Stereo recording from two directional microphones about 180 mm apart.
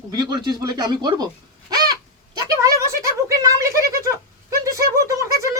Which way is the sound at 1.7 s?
20° right (ahead or behind).